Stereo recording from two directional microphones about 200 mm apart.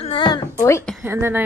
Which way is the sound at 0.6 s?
10° left (ahead or behind).